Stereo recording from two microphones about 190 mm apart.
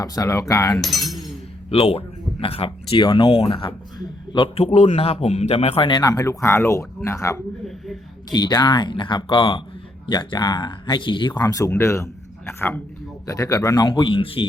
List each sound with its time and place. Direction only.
0.0 s speech: 20° left (ahead or behind)
0.8 s speech: centre (ahead or behind)
1.7 s speech: 30° left (ahead or behind)